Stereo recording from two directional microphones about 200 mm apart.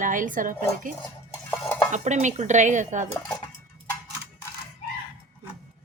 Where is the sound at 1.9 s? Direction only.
35° right (ahead or behind).